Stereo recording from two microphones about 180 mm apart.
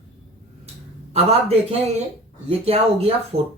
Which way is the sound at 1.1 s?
35° right (ahead or behind).